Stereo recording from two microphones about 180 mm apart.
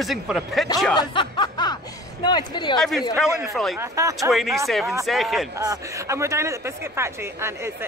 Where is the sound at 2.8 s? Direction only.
Centre (ahead or behind).